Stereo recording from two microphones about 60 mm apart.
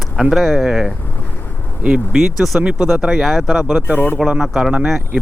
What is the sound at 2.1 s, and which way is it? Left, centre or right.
Speech, centre.